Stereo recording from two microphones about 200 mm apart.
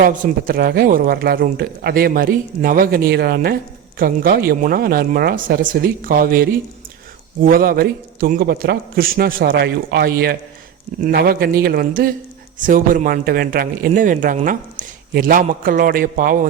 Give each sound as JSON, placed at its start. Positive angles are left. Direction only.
{"t": 0.0, "sound": "speech", "side_deg": -45}